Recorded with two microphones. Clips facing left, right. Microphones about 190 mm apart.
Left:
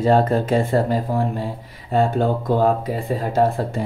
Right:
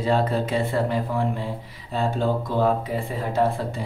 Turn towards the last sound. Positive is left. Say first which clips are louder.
# left 4 dB
turn(degrees=40)  # may be behind; listen again after turning